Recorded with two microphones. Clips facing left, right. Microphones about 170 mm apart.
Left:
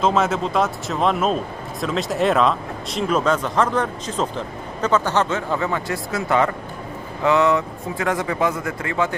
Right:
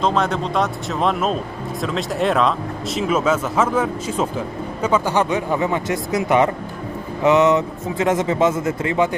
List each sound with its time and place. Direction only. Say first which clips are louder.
0.0 s a man's voice: even; 5° left (ahead or behind); by 9.1 s 20° right (ahead or behind)